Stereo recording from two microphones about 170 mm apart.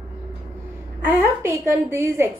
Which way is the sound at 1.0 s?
15° right (ahead or behind).